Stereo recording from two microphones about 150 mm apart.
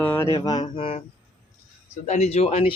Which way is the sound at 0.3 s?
25° left (ahead or behind).